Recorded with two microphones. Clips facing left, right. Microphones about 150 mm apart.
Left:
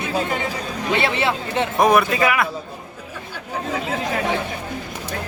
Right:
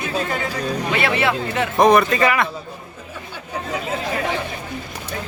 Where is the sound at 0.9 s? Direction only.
30° left (ahead or behind).